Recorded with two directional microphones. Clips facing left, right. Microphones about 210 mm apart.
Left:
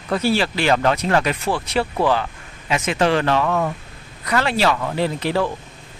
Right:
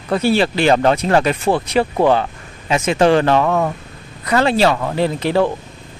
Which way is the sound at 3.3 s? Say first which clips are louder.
Right 4 dB; 40° right (ahead or behind).